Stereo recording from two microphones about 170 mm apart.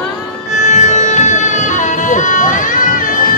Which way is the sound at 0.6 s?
45° left (ahead or behind).